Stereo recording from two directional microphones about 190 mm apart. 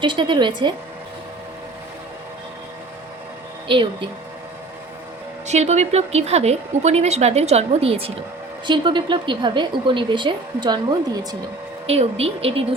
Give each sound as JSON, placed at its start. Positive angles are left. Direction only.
{"t": 0.0, "sound": "a woman's voice", "side_deg": -25}
{"t": 5.5, "sound": "a woman's voice", "side_deg": -35}
{"t": 11.9, "sound": "a woman's voice", "side_deg": -30}